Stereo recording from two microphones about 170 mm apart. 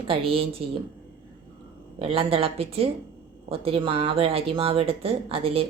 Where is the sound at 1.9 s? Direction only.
35° right (ahead or behind).